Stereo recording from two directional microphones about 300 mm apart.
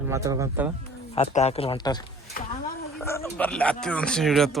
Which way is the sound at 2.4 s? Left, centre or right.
Left.